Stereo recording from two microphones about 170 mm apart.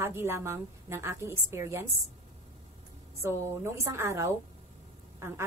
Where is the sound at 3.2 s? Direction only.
15° right (ahead or behind).